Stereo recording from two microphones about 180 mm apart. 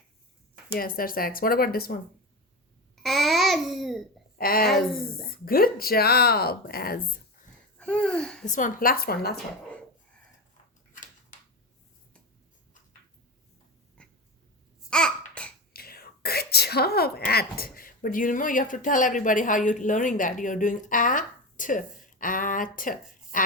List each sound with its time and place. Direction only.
0.8 s speech: 55° left (ahead or behind)
3.0 s babbling: centre (ahead or behind)
4.4 s a woman's voice: 55° left (ahead or behind)
4.6 s speech: centre (ahead or behind)
5.5 s speech: 55° left (ahead or behind)
7.8 s babbling: 5° left (ahead or behind)
8.4 s speech: 45° left (ahead or behind)
14.8 s babbling: 5° left (ahead or behind)
15.7 s whispering: 55° left (ahead or behind)